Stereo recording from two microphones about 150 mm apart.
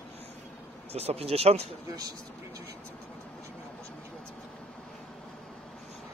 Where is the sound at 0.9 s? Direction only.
45° right (ahead or behind).